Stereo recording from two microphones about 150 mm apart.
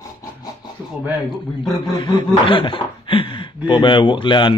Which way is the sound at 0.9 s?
10° right (ahead or behind).